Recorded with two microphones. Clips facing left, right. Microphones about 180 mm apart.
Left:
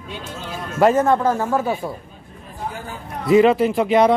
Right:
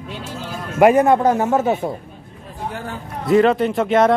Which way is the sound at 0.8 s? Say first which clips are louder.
Right 3 dB; 15° right (ahead or behind).